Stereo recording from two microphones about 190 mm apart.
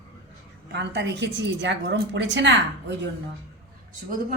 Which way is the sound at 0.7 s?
65° right (ahead or behind).